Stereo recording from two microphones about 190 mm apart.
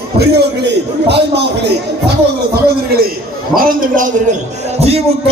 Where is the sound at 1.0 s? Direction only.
60° right (ahead or behind).